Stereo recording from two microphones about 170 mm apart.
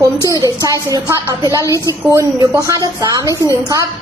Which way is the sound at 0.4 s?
20° right (ahead or behind).